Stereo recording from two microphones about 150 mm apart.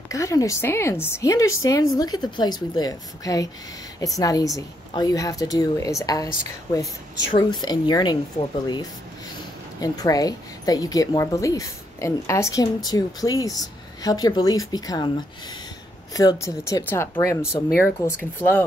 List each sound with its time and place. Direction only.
0.1 s a woman's voice: 20° left (ahead or behind)
9.8 s a woman's voice: 25° left (ahead or behind)
16.1 s a woman's voice: 25° left (ahead or behind)